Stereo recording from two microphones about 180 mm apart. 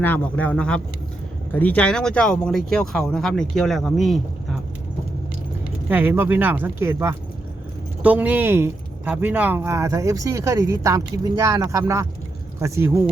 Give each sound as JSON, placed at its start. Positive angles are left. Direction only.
{"t": 0.0, "sound": "speech", "side_deg": 10}
{"t": 5.9, "sound": "speech", "side_deg": -10}